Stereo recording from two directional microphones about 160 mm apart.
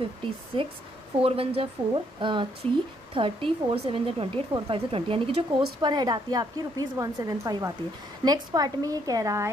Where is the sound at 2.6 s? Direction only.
10° left (ahead or behind).